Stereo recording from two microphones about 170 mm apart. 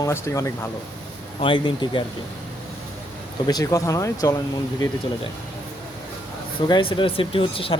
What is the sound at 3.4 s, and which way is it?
Speech, 20° left (ahead or behind).